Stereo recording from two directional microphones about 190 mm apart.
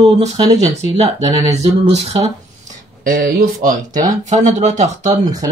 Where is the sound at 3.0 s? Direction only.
45° right (ahead or behind).